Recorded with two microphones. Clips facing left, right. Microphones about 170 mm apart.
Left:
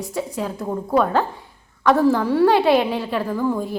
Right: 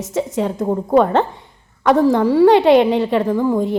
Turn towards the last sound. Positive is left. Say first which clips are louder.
# right 6 dB
turn(degrees=-20)  # may be behind; listen again after turning